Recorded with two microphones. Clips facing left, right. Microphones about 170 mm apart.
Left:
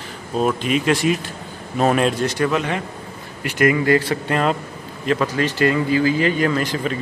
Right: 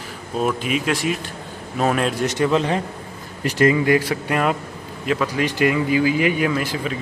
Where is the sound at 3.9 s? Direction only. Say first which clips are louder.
Left 1 dB; 10° right (ahead or behind).